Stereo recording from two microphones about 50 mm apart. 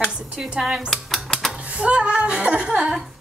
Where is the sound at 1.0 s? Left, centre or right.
Centre.